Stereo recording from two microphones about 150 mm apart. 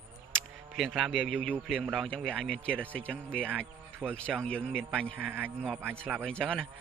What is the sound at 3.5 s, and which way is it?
Speech, 10° right (ahead or behind).